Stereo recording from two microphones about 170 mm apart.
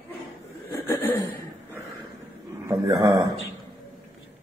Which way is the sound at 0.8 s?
15° left (ahead or behind).